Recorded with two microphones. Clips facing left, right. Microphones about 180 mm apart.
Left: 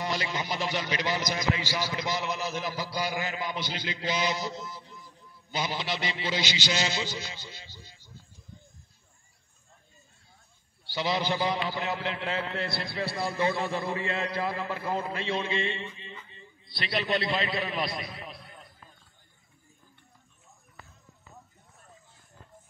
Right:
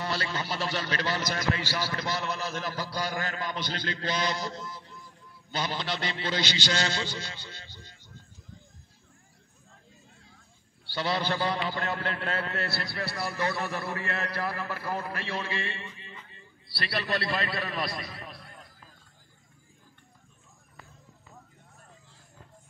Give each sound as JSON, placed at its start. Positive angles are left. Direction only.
{"t": 0.0, "sound": "a man's voice", "side_deg": 15}
{"t": 10.9, "sound": "a man's voice", "side_deg": 15}
{"t": 17.3, "sound": "a man's voice", "side_deg": 0}